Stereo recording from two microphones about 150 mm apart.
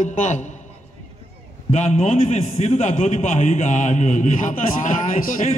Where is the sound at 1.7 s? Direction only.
50° left (ahead or behind).